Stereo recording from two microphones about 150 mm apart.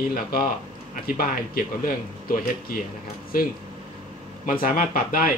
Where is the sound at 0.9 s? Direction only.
75° left (ahead or behind).